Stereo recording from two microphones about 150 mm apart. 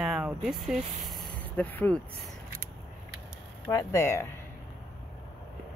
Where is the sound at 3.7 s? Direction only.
20° left (ahead or behind).